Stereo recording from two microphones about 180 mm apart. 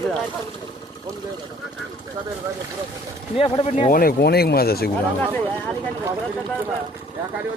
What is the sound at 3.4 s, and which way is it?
Speech, 30° left (ahead or behind).